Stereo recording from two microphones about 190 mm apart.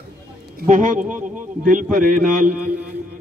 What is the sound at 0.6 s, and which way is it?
A man's voice, 45° right (ahead or behind).